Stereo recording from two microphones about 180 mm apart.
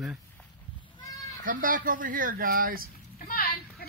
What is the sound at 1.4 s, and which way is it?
Speech, 50° right (ahead or behind).